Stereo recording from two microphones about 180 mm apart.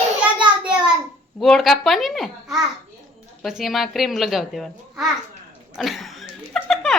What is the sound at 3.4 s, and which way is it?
A child's voice, centre (ahead or behind).